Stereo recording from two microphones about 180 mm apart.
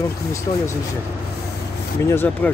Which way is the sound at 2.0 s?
10° left (ahead or behind).